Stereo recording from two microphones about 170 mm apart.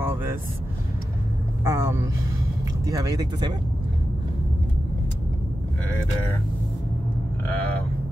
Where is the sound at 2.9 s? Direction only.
20° right (ahead or behind).